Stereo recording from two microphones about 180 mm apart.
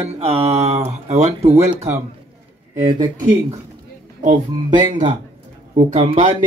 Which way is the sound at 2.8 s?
20° right (ahead or behind).